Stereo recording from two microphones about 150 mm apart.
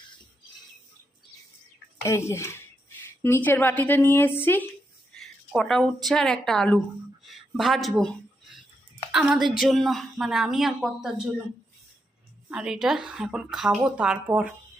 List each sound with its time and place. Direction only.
2.0 s speech: 20° left (ahead or behind)
5.1 s speech: centre (ahead or behind)
7.3 s a sound: centre (ahead or behind)
9.1 s a woman's voice: 5° right (ahead or behind)
12.5 s a woman's voice: 5° right (ahead or behind)